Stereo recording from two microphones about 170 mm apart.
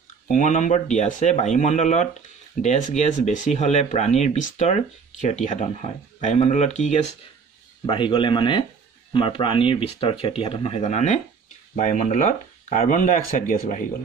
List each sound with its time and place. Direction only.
0.3 s speech: 45° left (ahead or behind)
7.8 s speech: 30° left (ahead or behind); by 13.8 s 50° left (ahead or behind)